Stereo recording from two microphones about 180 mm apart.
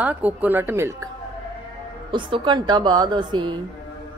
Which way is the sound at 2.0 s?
25° right (ahead or behind).